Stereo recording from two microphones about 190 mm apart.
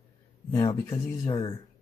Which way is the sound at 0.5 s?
20° left (ahead or behind).